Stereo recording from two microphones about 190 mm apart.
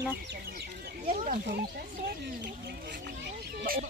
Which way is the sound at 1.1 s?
45° right (ahead or behind).